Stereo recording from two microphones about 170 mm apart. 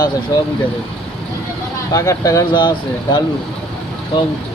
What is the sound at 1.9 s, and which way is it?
Speech, 20° left (ahead or behind).